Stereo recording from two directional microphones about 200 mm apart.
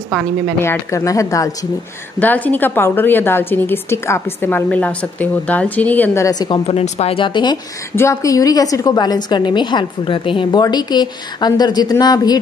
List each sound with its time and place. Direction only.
0.6 s a woman's voice: 15° left (ahead or behind)
6.6 s a woman's voice: 30° left (ahead or behind)